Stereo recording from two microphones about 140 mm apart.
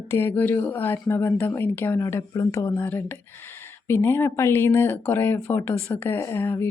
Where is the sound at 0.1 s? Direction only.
15° left (ahead or behind).